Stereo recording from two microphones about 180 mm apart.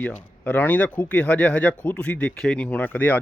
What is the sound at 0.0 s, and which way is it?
Speech, 10° left (ahead or behind).